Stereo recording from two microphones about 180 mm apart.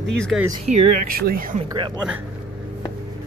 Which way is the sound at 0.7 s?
40° right (ahead or behind).